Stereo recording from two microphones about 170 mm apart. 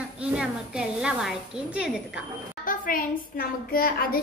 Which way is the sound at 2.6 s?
55° left (ahead or behind).